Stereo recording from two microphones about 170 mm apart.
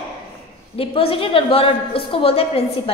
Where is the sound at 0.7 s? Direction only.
35° left (ahead or behind).